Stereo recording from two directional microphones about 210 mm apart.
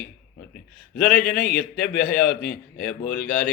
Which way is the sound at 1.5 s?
45° left (ahead or behind).